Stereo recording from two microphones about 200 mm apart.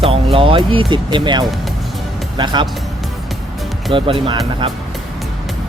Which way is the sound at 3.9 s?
25° right (ahead or behind).